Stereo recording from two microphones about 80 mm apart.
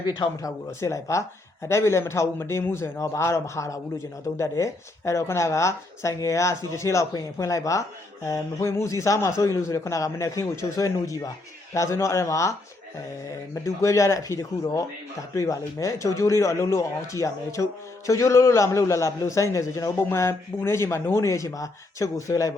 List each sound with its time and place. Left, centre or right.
0.4 s a man's voice: left
13.7 s a man's voice: left